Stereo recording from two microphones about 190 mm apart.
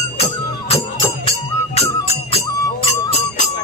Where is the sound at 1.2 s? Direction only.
35° left (ahead or behind).